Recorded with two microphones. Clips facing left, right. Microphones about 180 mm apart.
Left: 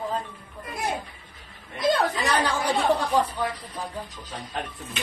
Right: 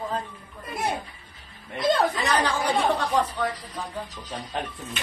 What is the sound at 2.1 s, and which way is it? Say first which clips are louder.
A woman's voice: even; 10° left (ahead or behind).